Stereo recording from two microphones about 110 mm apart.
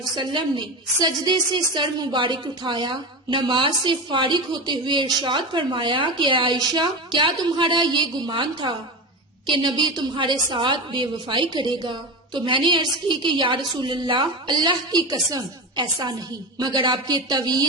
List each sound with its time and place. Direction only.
0.0 s a woman's voice: 45° right (ahead or behind)